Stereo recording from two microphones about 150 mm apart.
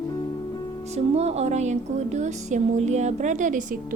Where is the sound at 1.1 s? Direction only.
45° right (ahead or behind); by 4.0 s 65° right (ahead or behind).